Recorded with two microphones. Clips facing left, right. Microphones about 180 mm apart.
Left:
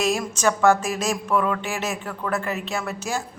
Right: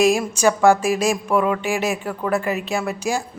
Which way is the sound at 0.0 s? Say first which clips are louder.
Right 5 dB; 10° right (ahead or behind).